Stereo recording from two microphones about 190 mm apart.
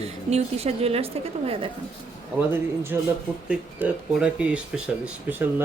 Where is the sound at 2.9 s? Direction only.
10° right (ahead or behind).